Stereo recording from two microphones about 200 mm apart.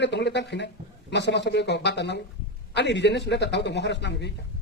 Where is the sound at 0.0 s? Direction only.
60° left (ahead or behind).